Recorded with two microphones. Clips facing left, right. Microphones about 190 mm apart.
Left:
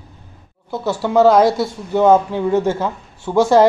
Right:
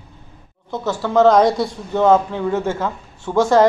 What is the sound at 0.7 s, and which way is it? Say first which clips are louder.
Speech: left 2 dB; 10° left (ahead or behind).